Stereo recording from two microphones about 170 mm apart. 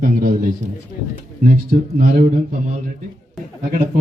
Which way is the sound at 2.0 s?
55° right (ahead or behind).